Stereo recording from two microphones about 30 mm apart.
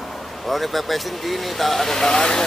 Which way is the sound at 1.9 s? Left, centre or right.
Centre.